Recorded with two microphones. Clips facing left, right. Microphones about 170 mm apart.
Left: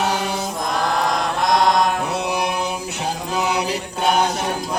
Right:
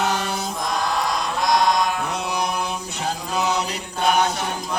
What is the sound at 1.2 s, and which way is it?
Chant, 50° left (ahead or behind).